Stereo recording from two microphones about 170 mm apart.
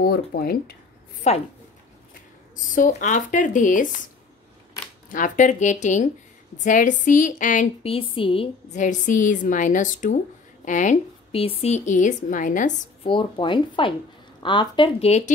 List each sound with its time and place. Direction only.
0.0 s speech: 60° left (ahead or behind)
1.3 s a woman's voice: 40° left (ahead or behind)
2.7 s a woman's voice: 50° left (ahead or behind)
5.1 s a woman's voice: 50° left (ahead or behind)
7.8 s a woman's voice: 35° left (ahead or behind)
8.7 s a woman's voice: 50° left (ahead or behind)
13.0 s a woman's voice: 30° left (ahead or behind)